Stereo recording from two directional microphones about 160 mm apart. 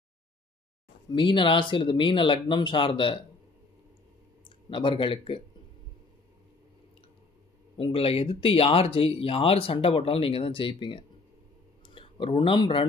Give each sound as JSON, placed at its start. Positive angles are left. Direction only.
{"t": 1.1, "sound": "speech", "side_deg": 30}
{"t": 4.5, "sound": "speech", "side_deg": 30}
{"t": 7.7, "sound": "speech", "side_deg": 35}